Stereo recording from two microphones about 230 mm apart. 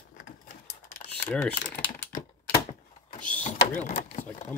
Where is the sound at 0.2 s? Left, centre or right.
Left.